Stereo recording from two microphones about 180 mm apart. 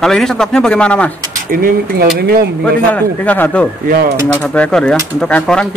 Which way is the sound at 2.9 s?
10° left (ahead or behind).